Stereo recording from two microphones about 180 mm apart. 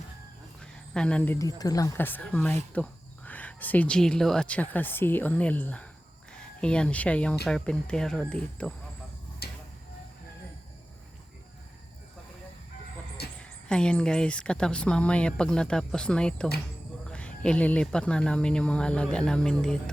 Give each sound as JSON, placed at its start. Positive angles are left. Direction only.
{"t": 0.6, "sound": "a woman's voice", "side_deg": 5}
{"t": 9.4, "sound": "a sound", "side_deg": 60}
{"t": 13.4, "sound": "a woman's voice", "side_deg": 5}